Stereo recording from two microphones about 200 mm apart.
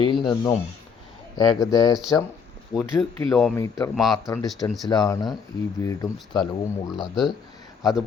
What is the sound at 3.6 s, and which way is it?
Speech, 15° left (ahead or behind).